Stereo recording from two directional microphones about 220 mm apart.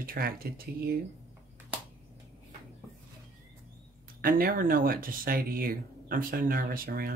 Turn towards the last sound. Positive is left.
turn(degrees=-40)  # may be behind; listen again after turning